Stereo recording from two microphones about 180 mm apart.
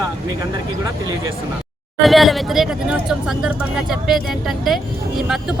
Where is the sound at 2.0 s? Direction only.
Centre (ahead or behind).